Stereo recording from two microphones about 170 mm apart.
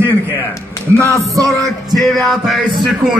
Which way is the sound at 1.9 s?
Centre (ahead or behind).